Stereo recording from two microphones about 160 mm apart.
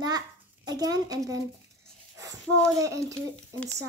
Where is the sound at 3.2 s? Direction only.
10° left (ahead or behind).